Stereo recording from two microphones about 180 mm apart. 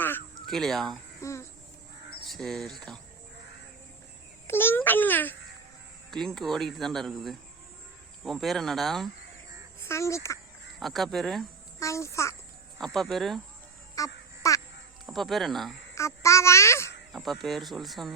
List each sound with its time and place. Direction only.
0.4 s speech: centre (ahead or behind)
1.2 s a sound: 15° left (ahead or behind)
2.2 s speech: centre (ahead or behind)
4.4 s babbling: 10° left (ahead or behind)
6.1 s speech: centre (ahead or behind)
9.8 s a child's voice: 15° left (ahead or behind)
10.8 s speech: centre (ahead or behind)
11.8 s a child's voice: 15° left (ahead or behind)
12.8 s speech: centre (ahead or behind)
14.0 s a sound: 20° left (ahead or behind)
14.4 s quack: 20° left (ahead or behind)
15.0 s speech: centre (ahead or behind)
16.0 s a child's voice: 15° left (ahead or behind)
17.1 s speech: centre (ahead or behind)